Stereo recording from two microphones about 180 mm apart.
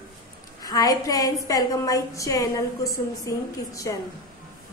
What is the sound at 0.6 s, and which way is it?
A woman's voice, 20° left (ahead or behind).